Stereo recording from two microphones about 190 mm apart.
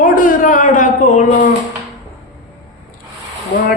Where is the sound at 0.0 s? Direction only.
45° left (ahead or behind).